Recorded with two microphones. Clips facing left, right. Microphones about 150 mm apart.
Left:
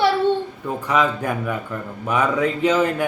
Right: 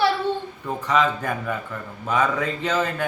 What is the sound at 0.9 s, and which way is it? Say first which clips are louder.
Speech: left 1 dB; 10° left (ahead or behind).